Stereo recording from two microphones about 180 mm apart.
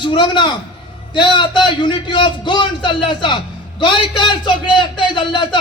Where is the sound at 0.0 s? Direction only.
25° left (ahead or behind).